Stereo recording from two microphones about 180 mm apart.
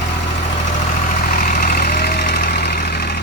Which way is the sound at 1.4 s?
50° left (ahead or behind).